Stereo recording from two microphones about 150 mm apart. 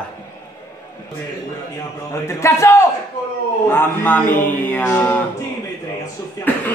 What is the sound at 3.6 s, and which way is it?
Mantra, 15° left (ahead or behind).